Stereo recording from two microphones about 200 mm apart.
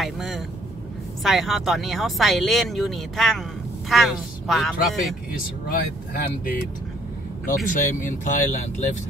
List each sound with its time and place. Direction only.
0.0 s vehicle: centre (ahead or behind)
1.2 s speech: centre (ahead or behind)
5.3 s speech: 45° left (ahead or behind)